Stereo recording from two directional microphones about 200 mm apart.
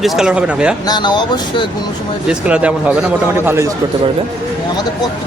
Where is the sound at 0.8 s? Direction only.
20° left (ahead or behind).